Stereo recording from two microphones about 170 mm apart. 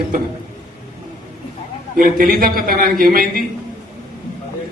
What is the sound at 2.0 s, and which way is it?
A man's voice, 60° right (ahead or behind).